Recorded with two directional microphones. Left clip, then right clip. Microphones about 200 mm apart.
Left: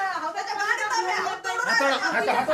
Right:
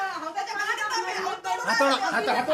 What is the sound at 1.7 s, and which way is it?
Speech, 20° right (ahead or behind).